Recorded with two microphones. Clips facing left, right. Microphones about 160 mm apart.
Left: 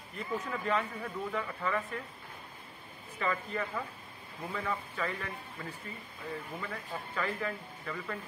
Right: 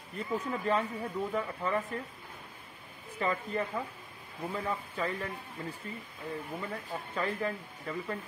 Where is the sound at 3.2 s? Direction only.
30° right (ahead or behind).